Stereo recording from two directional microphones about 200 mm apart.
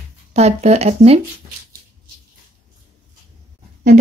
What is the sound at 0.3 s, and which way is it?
Speech, 35° right (ahead or behind).